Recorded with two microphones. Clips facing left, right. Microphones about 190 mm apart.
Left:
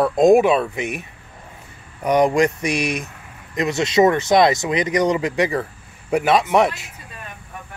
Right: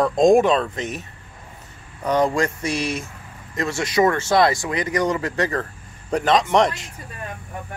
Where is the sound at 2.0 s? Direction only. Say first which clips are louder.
Left 4 dB; 15° left (ahead or behind).